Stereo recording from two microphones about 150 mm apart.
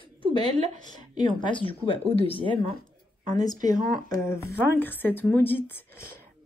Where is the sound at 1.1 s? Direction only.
35° left (ahead or behind).